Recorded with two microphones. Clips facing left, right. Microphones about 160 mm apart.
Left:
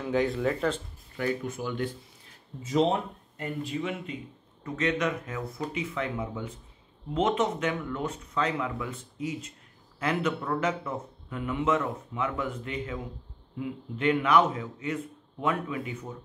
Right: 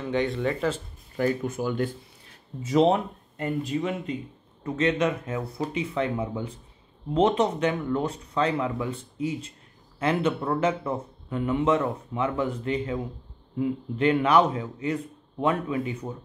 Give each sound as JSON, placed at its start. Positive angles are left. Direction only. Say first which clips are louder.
{"t": 0.0, "sound": "speech", "louder": "right 1 dB", "side_deg": 0}
{"t": 1.1, "sound": "speech", "louder": "right 5 dB", "side_deg": -40}
{"t": 2.6, "sound": "speech", "louder": "right 4 dB", "side_deg": -70}
{"t": 3.7, "sound": "a man's voice", "louder": "right 5 dB", "side_deg": -35}